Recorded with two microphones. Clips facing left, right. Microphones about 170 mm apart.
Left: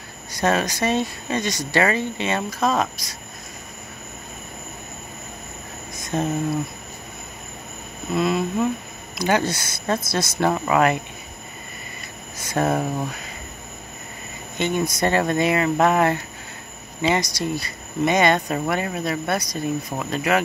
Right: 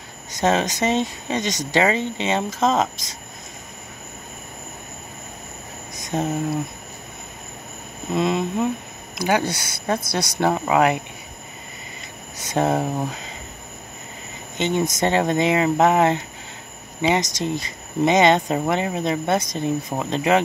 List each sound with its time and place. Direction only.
0.3 s speech: 20° right (ahead or behind)
5.9 s a sound: 15° right (ahead or behind)
8.1 s speech: 20° right (ahead or behind)
9.2 s speech: 10° right (ahead or behind)
12.4 s speech: 20° right (ahead or behind)
14.6 s speech: 20° right (ahead or behind)